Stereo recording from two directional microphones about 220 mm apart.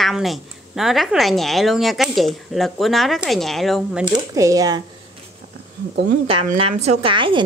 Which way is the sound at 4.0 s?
15° right (ahead or behind).